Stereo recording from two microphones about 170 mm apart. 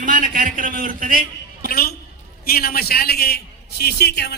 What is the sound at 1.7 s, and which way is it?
A man's voice, 60° left (ahead or behind).